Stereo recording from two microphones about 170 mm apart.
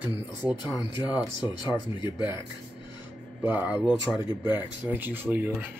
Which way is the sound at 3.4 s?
10° right (ahead or behind).